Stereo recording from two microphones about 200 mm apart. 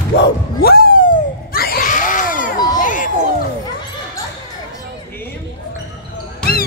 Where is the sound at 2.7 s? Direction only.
40° left (ahead or behind).